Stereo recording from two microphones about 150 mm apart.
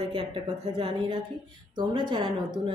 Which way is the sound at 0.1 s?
35° right (ahead or behind).